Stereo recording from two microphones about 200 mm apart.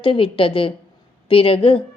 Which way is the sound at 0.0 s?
25° left (ahead or behind).